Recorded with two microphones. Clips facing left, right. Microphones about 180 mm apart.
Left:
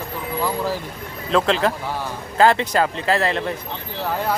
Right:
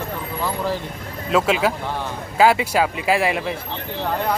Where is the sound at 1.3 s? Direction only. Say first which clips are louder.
Even; 5° right (ahead or behind).